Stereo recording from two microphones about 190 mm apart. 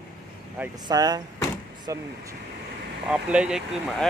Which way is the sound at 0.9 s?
20° right (ahead or behind).